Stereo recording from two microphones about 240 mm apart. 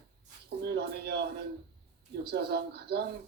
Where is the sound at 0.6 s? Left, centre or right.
Right.